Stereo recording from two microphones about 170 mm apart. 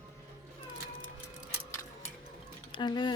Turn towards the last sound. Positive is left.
turn(degrees=25)  # may be behind; listen again after turning